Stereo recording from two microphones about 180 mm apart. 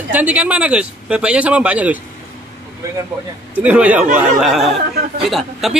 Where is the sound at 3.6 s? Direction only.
10° right (ahead or behind).